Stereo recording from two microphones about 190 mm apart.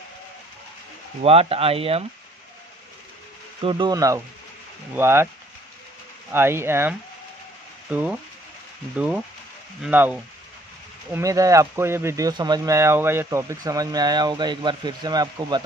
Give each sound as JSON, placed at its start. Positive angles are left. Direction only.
{"t": 1.2, "sound": "speech", "side_deg": -30}
{"t": 3.6, "sound": "speech", "side_deg": -25}
{"t": 6.3, "sound": "speech", "side_deg": -10}